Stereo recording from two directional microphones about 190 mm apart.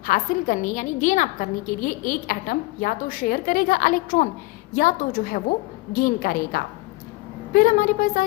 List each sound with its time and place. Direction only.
0.0 s a woman's voice: 45° left (ahead or behind)